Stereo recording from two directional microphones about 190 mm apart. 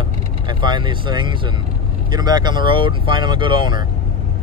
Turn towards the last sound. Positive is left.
turn(degrees=-25)  # may be behind; listen again after turning